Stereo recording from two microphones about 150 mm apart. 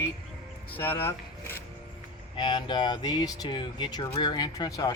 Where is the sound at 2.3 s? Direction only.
30° left (ahead or behind).